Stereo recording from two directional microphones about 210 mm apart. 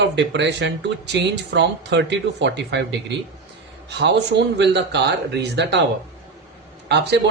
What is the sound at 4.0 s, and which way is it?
Speech, 55° right (ahead or behind).